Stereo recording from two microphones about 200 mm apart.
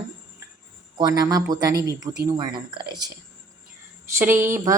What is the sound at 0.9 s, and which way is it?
Speech, 20° right (ahead or behind).